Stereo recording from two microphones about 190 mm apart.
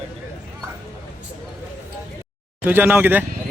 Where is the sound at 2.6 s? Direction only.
10° right (ahead or behind).